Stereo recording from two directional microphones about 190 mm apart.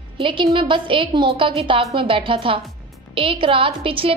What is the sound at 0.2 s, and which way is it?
A woman's voice, 25° right (ahead or behind).